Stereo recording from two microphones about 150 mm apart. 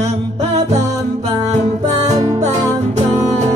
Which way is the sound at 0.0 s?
50° right (ahead or behind).